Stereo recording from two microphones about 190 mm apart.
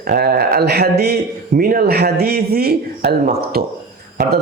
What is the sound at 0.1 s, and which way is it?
Speech, 55° right (ahead or behind).